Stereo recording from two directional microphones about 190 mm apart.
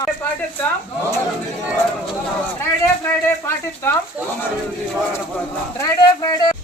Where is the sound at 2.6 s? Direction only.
15° left (ahead or behind).